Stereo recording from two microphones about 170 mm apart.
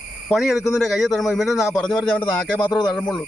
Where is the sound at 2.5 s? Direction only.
25° left (ahead or behind).